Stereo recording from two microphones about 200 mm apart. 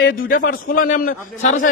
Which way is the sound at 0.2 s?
45° left (ahead or behind).